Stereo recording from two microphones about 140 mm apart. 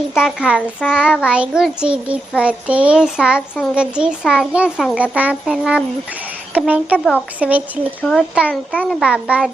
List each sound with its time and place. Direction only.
0.2 s a child's voice: 5° right (ahead or behind)
8.7 s a child's voice: 10° left (ahead or behind)
9.0 s a child's voice: 5° right (ahead or behind)